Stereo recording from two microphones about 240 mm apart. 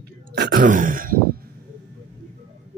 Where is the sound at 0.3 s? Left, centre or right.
Right.